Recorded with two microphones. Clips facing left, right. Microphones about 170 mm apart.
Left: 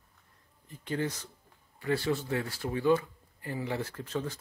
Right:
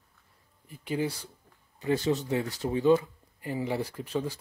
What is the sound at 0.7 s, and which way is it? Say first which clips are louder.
Speech: right 2 dB; 10° right (ahead or behind).